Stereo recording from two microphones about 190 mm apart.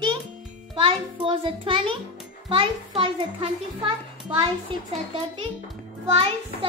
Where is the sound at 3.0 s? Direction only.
30° right (ahead or behind).